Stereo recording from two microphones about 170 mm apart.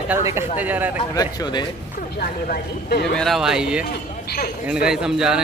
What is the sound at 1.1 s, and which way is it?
Speech, 20° left (ahead or behind).